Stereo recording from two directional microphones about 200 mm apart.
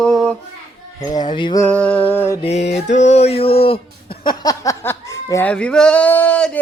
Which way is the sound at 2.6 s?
60° left (ahead or behind).